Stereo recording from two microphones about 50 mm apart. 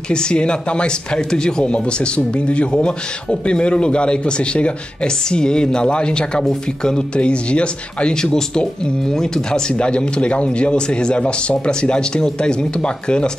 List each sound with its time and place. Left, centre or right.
0.1 s speech: centre